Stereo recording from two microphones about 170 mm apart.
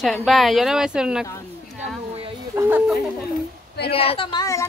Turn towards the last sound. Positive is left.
turn(degrees=20)  # may be behind; listen again after turning